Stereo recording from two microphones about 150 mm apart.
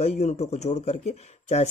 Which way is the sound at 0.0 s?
45° left (ahead or behind).